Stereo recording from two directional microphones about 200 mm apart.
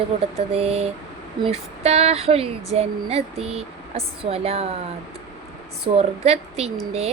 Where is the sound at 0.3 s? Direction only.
30° right (ahead or behind).